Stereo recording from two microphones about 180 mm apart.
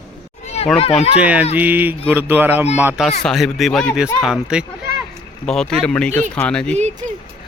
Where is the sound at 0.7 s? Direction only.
35° left (ahead or behind).